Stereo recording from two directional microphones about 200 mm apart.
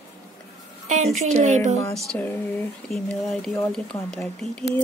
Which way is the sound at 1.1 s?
35° right (ahead or behind).